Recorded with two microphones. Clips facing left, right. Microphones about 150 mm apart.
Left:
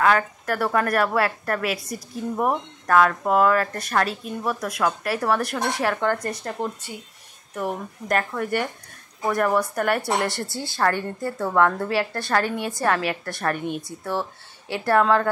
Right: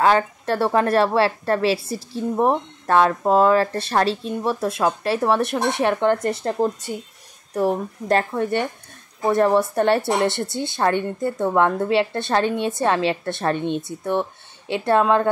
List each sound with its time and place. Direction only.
0.0 s a woman's voice: 30° right (ahead or behind)
6.9 s speech: 50° right (ahead or behind)
7.5 s a woman's voice: 30° right (ahead or behind)